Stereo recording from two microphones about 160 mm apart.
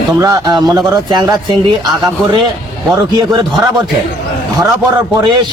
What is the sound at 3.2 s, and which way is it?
Speech, 25° right (ahead or behind).